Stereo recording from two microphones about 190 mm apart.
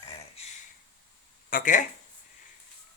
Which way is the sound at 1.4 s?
45° left (ahead or behind).